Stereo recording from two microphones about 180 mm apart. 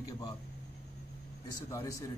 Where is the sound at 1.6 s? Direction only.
15° left (ahead or behind).